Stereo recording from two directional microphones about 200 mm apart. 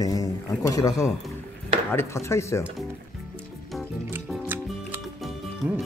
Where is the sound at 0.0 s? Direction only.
15° left (ahead or behind).